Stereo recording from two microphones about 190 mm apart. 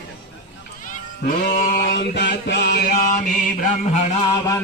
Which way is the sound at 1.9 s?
65° left (ahead or behind).